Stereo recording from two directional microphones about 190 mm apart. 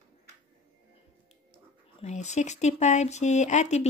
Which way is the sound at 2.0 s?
35° left (ahead or behind).